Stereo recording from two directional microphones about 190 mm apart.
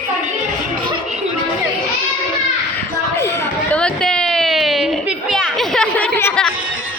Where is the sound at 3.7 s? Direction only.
5° left (ahead or behind).